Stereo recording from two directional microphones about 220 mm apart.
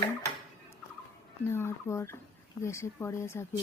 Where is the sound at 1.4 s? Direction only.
10° left (ahead or behind).